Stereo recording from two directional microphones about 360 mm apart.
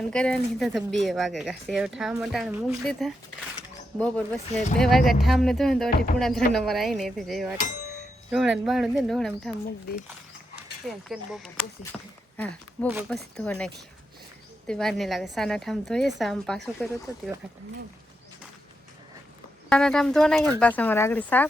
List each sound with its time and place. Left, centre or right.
0.1 s speech: centre
10.8 s speech: centre
14.7 s speech: centre
19.7 s speech: centre